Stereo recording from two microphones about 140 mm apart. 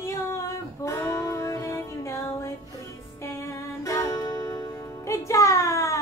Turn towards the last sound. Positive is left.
turn(degrees=20)  # may be behind; listen again after turning